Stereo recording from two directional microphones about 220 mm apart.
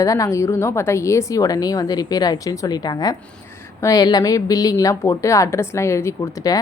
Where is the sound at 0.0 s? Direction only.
15° left (ahead or behind).